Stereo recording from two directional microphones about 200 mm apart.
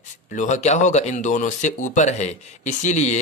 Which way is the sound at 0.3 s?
35° left (ahead or behind).